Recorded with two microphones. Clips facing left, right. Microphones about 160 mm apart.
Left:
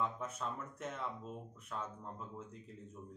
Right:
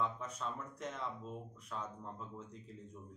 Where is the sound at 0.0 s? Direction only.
10° left (ahead or behind).